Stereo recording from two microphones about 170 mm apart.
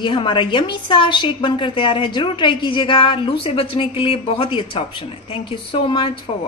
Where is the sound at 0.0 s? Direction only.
30° left (ahead or behind).